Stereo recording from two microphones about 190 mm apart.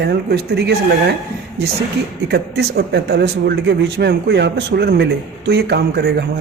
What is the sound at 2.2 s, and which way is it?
Speech, 60° right (ahead or behind).